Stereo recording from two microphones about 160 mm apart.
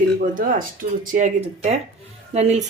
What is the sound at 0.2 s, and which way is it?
Speech, 55° right (ahead or behind).